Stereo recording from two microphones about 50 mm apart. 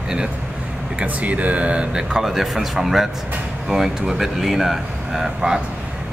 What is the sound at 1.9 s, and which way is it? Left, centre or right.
Speech, centre.